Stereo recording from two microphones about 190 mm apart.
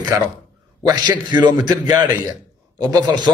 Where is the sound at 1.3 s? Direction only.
25° right (ahead or behind).